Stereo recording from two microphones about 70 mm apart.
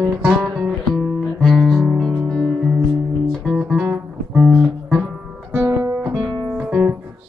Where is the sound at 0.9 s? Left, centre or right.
Centre.